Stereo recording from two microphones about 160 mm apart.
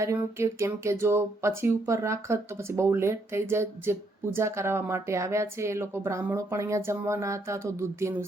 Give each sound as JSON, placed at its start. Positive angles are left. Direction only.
{"t": 0.0, "sound": "speech", "side_deg": -15}